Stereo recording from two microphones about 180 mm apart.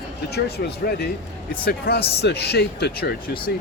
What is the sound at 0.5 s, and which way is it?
Speech, 65° left (ahead or behind).